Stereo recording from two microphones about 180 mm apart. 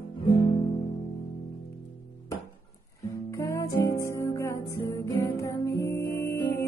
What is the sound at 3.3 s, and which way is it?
Music, 15° left (ahead or behind).